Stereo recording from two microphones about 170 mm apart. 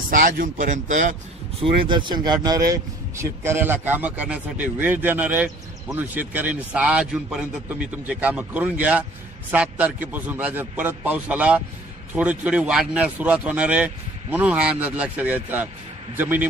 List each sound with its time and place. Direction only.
0.1 s speech: 50° right (ahead or behind)
1.6 s speech: 30° right (ahead or behind); by 16.4 s 10° right (ahead or behind)